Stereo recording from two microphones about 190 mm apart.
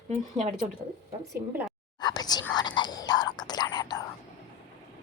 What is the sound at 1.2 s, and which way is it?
Speech, 15° right (ahead or behind).